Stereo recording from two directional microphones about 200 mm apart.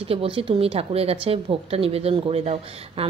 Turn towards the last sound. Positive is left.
turn(degrees=-30)  # may be behind; listen again after turning